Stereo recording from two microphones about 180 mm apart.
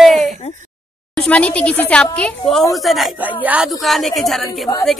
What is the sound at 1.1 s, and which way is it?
A woman's voice, 5° left (ahead or behind).